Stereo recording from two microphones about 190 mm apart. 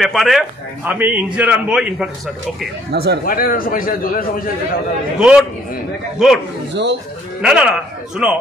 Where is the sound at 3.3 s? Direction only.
50° left (ahead or behind).